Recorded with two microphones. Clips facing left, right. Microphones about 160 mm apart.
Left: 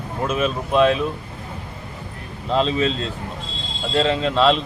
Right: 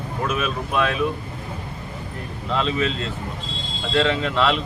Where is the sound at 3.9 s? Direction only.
30° left (ahead or behind).